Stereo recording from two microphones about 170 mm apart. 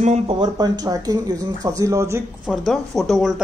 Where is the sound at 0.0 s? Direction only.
40° right (ahead or behind).